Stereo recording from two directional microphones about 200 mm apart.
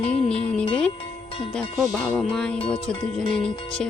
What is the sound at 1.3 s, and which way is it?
Music, 25° left (ahead or behind).